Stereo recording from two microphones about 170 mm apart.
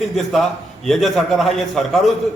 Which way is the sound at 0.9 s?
Centre (ahead or behind).